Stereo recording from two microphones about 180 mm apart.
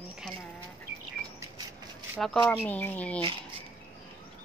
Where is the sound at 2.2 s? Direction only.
5° left (ahead or behind).